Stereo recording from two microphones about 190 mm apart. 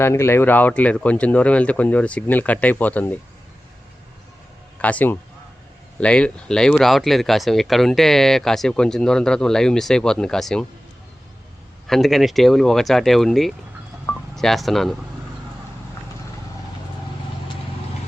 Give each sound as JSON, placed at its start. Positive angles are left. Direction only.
{"t": 0.0, "sound": "speech", "side_deg": 15}
{"t": 4.8, "sound": "speech", "side_deg": 10}
{"t": 11.9, "sound": "speech", "side_deg": 0}